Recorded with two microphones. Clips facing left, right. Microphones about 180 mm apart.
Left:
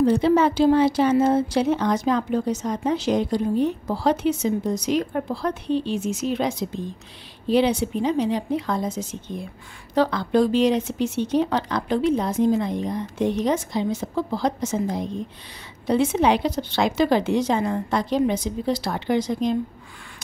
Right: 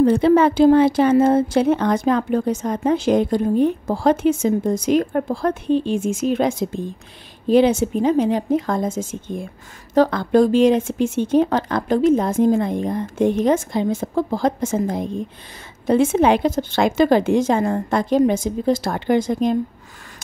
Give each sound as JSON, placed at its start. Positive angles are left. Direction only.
{"t": 0.0, "sound": "a woman's voice", "side_deg": -55}